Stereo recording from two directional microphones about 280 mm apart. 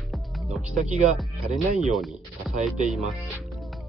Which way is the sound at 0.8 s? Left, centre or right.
Right.